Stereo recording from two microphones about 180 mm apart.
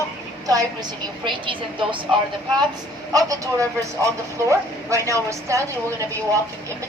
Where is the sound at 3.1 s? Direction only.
20° right (ahead or behind).